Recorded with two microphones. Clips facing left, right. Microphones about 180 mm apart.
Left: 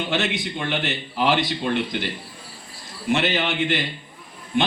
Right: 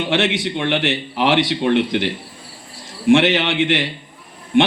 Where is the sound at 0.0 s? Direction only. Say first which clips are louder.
Right 5 dB; 80° right.